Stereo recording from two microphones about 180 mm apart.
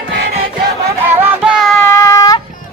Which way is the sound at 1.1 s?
10° right (ahead or behind).